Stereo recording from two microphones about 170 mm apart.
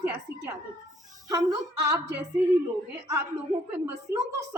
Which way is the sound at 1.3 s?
20° right (ahead or behind).